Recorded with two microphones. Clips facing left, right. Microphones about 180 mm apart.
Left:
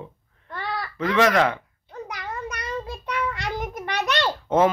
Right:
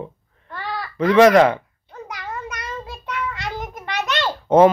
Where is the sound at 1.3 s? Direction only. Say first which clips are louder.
Right 7 dB; 35° right (ahead or behind).